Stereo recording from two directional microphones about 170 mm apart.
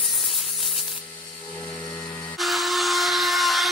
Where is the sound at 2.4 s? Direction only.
Centre (ahead or behind).